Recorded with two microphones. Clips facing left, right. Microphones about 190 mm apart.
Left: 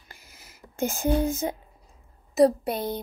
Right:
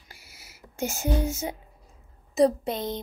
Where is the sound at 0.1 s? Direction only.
10° right (ahead or behind).